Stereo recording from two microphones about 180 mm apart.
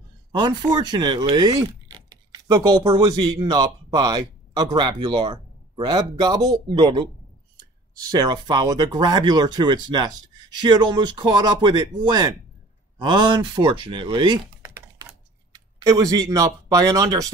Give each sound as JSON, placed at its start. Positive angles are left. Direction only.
{"t": 0.4, "sound": "speech", "side_deg": -25}
{"t": 8.1, "sound": "speech", "side_deg": -20}
{"t": 14.6, "sound": "typing", "side_deg": -15}
{"t": 15.5, "sound": "speech", "side_deg": -20}